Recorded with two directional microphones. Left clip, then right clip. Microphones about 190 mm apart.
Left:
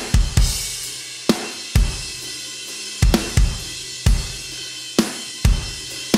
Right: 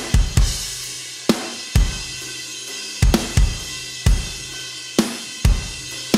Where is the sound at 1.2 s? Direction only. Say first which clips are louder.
Even; centre (ahead or behind).